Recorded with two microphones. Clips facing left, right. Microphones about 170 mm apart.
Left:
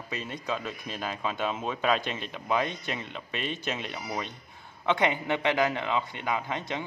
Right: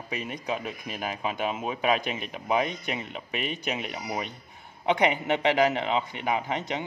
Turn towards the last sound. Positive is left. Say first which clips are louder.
# right 3 dB
turn(degrees=-20)  # may be behind; listen again after turning